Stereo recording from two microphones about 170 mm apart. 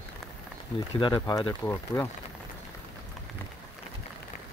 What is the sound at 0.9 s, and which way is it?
Speech, 25° left (ahead or behind).